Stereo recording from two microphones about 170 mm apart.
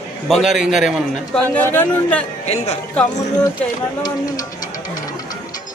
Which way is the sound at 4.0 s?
25° left (ahead or behind).